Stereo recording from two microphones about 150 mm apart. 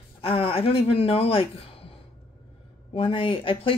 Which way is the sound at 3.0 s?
35° left (ahead or behind).